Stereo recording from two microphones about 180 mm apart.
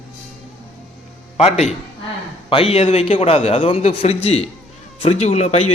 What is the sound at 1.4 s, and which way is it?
A man's voice, 35° left (ahead or behind).